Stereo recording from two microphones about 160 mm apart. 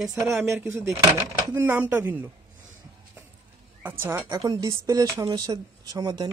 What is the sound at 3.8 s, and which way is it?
A woman's voice, 15° right (ahead or behind).